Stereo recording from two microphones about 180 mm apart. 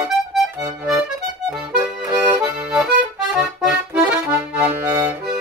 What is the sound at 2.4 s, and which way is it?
Accordion, 5° right (ahead or behind).